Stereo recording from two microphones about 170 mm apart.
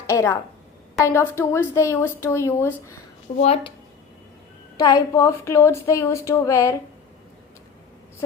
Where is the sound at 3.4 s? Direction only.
35° left (ahead or behind).